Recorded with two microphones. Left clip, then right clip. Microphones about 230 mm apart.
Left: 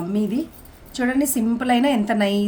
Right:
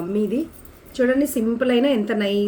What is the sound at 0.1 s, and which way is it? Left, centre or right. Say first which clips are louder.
A woman's voice: right 4 dB; left.